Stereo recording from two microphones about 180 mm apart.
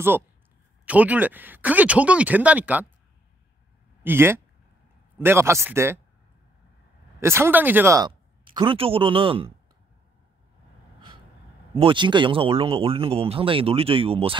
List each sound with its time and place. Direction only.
0.8 s speech: 10° right (ahead or behind)
4.0 s speech: 10° right (ahead or behind)
7.2 s speech: 15° right (ahead or behind)
8.5 s speech: 30° right (ahead or behind)
11.8 s speech: 25° right (ahead or behind)